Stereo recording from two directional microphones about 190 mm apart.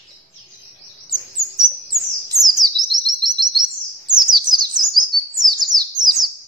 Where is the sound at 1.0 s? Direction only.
20° right (ahead or behind).